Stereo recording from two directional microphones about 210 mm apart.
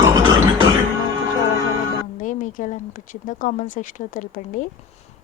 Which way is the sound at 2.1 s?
40° left (ahead or behind).